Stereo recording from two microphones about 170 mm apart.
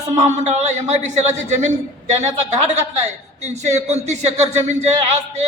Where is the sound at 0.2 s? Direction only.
45° right (ahead or behind).